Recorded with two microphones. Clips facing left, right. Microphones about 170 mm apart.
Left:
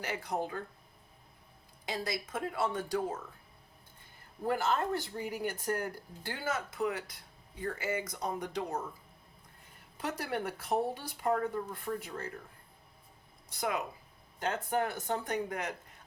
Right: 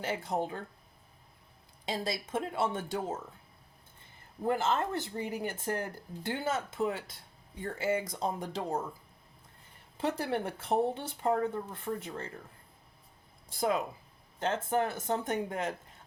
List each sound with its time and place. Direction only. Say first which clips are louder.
0.0 s speech: right 3 dB; 25° right (ahead or behind)
1.8 s speech: right 2 dB; 25° right (ahead or behind)
4.4 s speech: right 1 dB; 20° right (ahead or behind)
10.0 s speech: right 4 dB; 25° right (ahead or behind)
14.3 s speech: right 2 dB; 25° right (ahead or behind)